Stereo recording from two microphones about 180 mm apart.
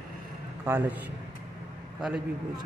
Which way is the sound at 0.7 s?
10° right (ahead or behind).